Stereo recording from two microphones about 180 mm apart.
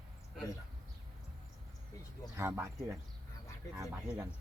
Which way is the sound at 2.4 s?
15° right (ahead or behind).